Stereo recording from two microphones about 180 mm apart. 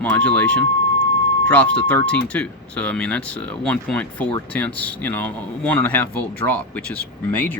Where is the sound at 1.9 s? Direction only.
10° left (ahead or behind).